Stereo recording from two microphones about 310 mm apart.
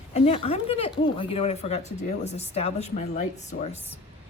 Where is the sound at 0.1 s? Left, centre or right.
Centre.